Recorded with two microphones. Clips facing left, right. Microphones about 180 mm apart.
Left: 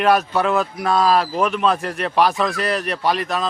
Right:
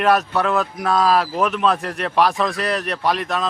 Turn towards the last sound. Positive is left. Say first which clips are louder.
# even
turn(degrees=0)  # may be behind; listen again after turning